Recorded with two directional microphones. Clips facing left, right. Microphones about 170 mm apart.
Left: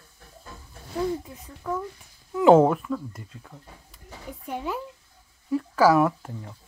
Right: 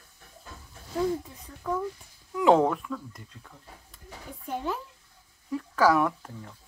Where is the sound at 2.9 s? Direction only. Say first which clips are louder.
Left 6 dB; 35° left (ahead or behind).